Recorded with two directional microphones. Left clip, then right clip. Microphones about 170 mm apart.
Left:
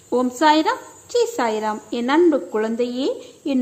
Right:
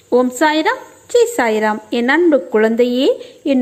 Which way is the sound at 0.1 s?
20° right (ahead or behind).